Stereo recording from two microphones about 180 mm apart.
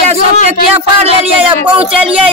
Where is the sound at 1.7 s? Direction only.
5° right (ahead or behind).